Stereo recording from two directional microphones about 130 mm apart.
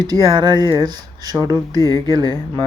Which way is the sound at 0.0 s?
30° right (ahead or behind).